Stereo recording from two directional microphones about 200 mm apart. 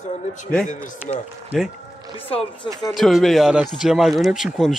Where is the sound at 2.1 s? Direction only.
30° left (ahead or behind).